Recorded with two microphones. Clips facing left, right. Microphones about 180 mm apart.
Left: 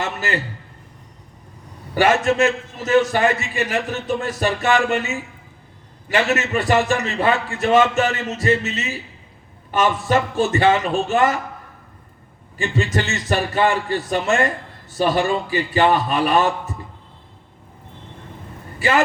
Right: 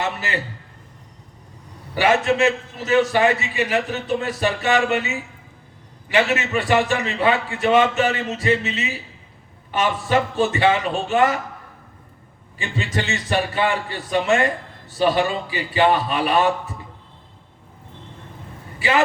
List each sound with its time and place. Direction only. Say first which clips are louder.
0.0 s a man's voice: left 1 dB; 45° left (ahead or behind)
2.0 s a man's voice: left 1 dB; 45° left (ahead or behind)
12.5 s a man's voice: left 4 dB; 45° left (ahead or behind)
18.8 s a man's voice: left 2 dB; 45° left (ahead or behind)